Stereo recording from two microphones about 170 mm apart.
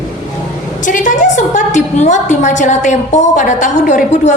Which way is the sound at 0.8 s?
50° left (ahead or behind).